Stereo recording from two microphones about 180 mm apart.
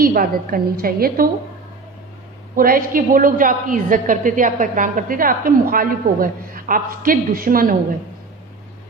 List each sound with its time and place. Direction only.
0.0 s a woman's voice: 50° right (ahead or behind)
2.6 s a woman's voice: 50° right (ahead or behind)